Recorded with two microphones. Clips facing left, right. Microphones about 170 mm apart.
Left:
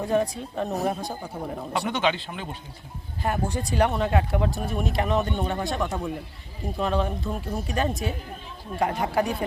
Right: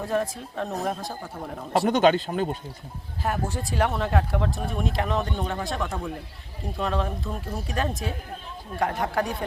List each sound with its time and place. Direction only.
0.0 s speech: centre (ahead or behind)
1.9 s speech: 45° right (ahead or behind)
3.2 s speech: centre (ahead or behind)